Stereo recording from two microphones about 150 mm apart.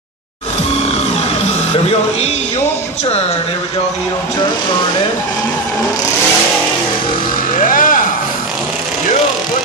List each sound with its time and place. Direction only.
7.5 s music: 65° left (ahead or behind)